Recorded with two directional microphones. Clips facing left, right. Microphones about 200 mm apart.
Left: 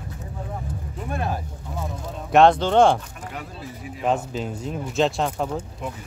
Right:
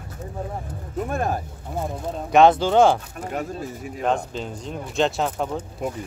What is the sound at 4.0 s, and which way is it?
Speech, 5° left (ahead or behind).